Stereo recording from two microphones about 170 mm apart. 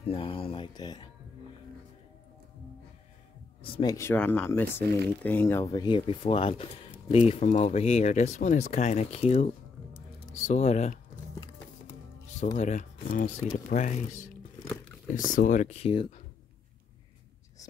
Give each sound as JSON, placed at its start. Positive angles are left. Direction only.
{"t": 0.1, "sound": "speech", "side_deg": 30}
{"t": 3.7, "sound": "speech", "side_deg": 20}
{"t": 12.5, "sound": "speech", "side_deg": 45}
{"t": 15.3, "sound": "speech", "side_deg": 50}